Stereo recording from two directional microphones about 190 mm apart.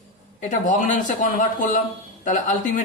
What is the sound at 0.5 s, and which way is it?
A woman's voice, 45° left (ahead or behind).